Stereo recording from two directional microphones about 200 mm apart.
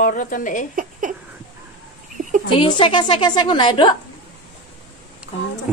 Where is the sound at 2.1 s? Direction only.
40° right (ahead or behind).